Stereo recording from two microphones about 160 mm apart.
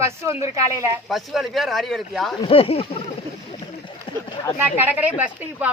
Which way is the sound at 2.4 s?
35° left (ahead or behind).